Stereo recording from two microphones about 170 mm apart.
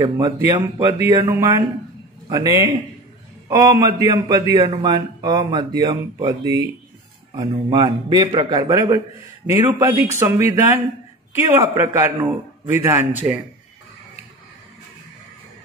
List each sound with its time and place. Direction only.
0.0 s a man's voice: 20° right (ahead or behind)
11.6 s speech: 15° right (ahead or behind)